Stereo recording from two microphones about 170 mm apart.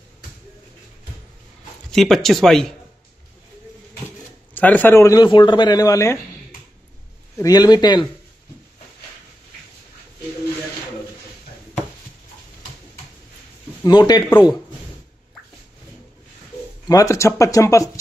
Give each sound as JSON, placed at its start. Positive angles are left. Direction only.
{"t": 1.9, "sound": "speech", "side_deg": 0}
{"t": 4.6, "sound": "speech", "side_deg": 10}
{"t": 7.3, "sound": "speech", "side_deg": 20}
{"t": 13.8, "sound": "speech", "side_deg": 25}
{"t": 16.8, "sound": "speech", "side_deg": 20}